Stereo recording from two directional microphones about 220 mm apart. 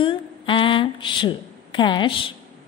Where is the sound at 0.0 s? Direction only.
25° left (ahead or behind).